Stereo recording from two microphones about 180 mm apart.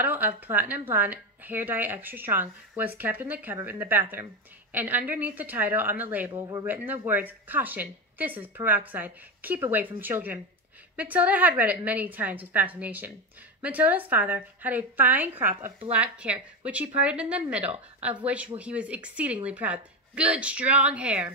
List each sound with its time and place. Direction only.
0.0 s a sound: 10° right (ahead or behind)
0.4 s speech: 10° right (ahead or behind)
6.3 s speech: 20° right (ahead or behind)
6.6 s speech: 10° right (ahead or behind)